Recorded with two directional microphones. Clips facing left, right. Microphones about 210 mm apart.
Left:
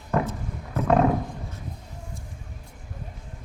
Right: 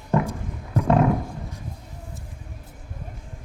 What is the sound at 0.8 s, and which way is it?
Roaring cats, 15° right (ahead or behind).